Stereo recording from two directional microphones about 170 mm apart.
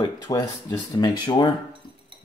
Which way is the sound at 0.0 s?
25° left (ahead or behind).